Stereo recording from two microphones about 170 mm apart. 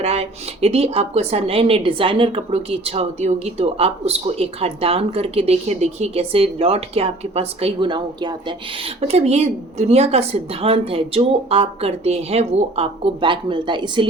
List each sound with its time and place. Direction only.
0.0 s a woman's voice: 40° right (ahead or behind)